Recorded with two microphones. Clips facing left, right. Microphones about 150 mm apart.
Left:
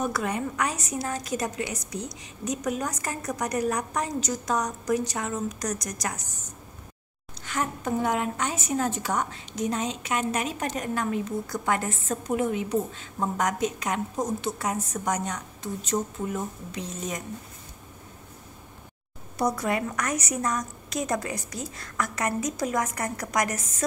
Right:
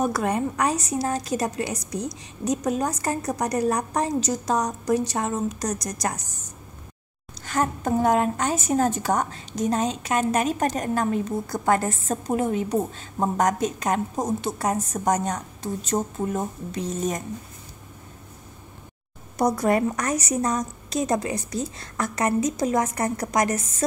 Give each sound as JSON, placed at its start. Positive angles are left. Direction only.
{"t": 0.0, "sound": "a woman's voice", "side_deg": -40}
{"t": 7.4, "sound": "a woman's voice", "side_deg": -40}
{"t": 19.3, "sound": "a woman's voice", "side_deg": -40}